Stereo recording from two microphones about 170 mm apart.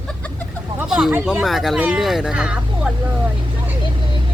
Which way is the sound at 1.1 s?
10° right (ahead or behind).